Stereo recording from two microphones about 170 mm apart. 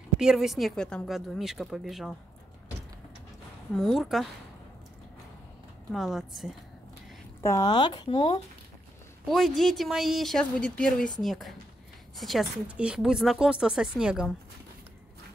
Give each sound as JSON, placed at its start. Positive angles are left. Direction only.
{"t": 0.2, "sound": "speech", "side_deg": -5}
{"t": 3.7, "sound": "speech", "side_deg": 0}
{"t": 5.9, "sound": "speech", "side_deg": 0}
{"t": 7.4, "sound": "speech", "side_deg": 20}
{"t": 9.3, "sound": "speech", "side_deg": 0}